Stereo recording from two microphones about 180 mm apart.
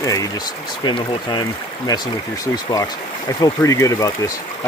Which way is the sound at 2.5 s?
20° left (ahead or behind).